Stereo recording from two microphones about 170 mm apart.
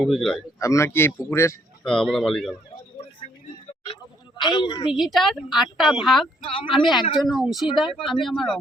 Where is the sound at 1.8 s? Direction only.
Centre (ahead or behind).